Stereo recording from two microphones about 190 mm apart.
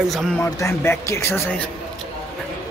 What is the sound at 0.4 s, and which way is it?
Speech, 15° left (ahead or behind).